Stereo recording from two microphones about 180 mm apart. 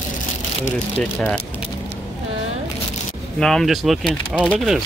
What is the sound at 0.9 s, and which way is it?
Speech, 5° left (ahead or behind).